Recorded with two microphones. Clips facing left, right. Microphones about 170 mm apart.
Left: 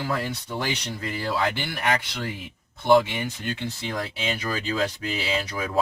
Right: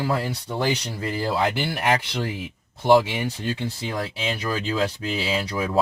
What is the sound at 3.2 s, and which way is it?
Speech, 30° right (ahead or behind).